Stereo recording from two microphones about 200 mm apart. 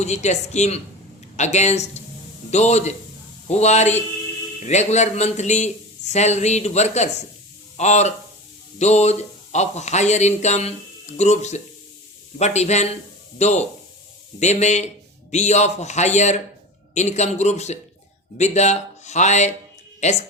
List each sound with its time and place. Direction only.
0.0 s speech: 35° left (ahead or behind)